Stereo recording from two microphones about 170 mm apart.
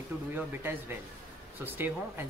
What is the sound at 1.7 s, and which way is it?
Speech, 10° right (ahead or behind).